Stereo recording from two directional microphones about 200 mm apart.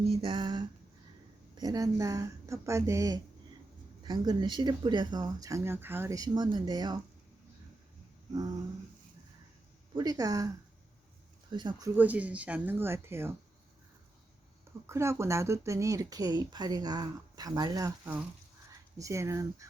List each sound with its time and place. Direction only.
0.1 s speech: 25° right (ahead or behind)
9.9 s speech: 20° right (ahead or behind)
11.5 s speech: 20° right (ahead or behind)
11.9 s speech: 10° right (ahead or behind)
14.8 s speech: 15° right (ahead or behind)